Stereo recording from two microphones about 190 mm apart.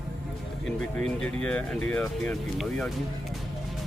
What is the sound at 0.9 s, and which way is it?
Speech, 5° left (ahead or behind).